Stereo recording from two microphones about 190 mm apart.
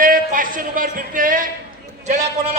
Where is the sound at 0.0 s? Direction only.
45° right (ahead or behind).